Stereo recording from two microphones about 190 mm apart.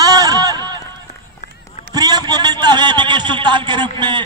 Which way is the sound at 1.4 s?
40° left (ahead or behind).